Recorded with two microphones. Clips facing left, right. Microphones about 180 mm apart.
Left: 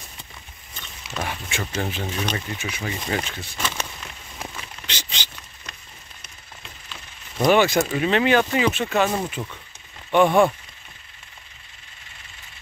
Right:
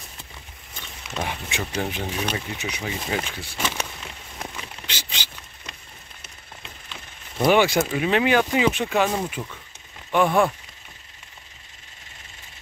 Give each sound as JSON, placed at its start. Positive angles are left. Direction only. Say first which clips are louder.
{"t": 1.1, "sound": "speech", "louder": "even", "side_deg": -15}
{"t": 4.8, "sound": "a sound", "louder": "left 1 dB", "side_deg": -10}
{"t": 7.3, "sound": "speech", "louder": "left 1 dB", "side_deg": -10}
{"t": 9.4, "sound": "rain on surface", "louder": "left 1 dB", "side_deg": 5}